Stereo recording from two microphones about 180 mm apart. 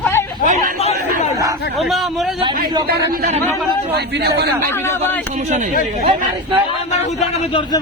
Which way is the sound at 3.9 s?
65° right (ahead or behind).